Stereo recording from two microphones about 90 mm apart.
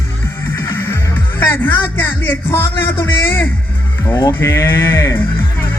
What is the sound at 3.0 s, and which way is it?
Speech, 25° left (ahead or behind).